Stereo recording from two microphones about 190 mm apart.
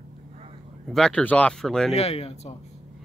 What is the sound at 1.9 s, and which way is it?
Speech, 30° left (ahead or behind).